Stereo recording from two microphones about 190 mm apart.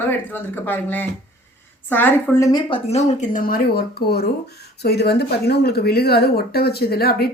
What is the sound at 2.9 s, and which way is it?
Speech, 35° left (ahead or behind).